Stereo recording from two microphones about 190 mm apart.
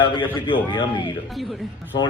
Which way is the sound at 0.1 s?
25° left (ahead or behind).